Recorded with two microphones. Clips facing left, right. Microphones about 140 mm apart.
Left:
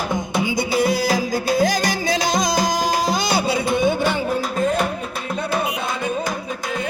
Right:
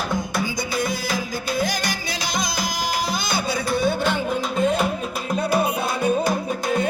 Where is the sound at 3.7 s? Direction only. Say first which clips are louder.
Even; 15° left (ahead or behind).